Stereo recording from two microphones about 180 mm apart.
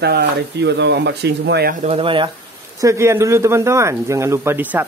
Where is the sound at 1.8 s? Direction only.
30° right (ahead or behind).